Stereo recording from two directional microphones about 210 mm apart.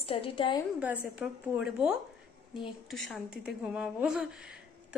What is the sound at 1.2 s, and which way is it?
A woman's voice, 5° right (ahead or behind).